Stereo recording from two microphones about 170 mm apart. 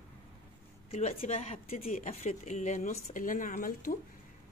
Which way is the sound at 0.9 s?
40° left (ahead or behind).